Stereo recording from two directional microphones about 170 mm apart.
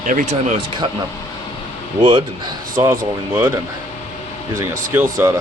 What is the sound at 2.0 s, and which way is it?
Speech, 30° right (ahead or behind).